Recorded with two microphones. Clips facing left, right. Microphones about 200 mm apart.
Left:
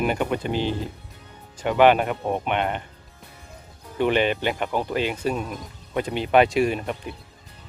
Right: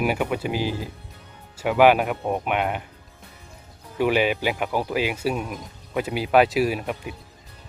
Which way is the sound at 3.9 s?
5° right (ahead or behind).